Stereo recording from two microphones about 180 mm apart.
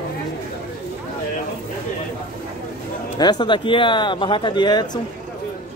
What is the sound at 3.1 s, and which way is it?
Speech, 25° left (ahead or behind).